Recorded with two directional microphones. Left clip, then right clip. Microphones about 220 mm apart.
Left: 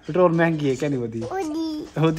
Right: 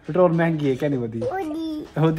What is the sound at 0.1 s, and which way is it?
A child's voice, 5° left (ahead or behind).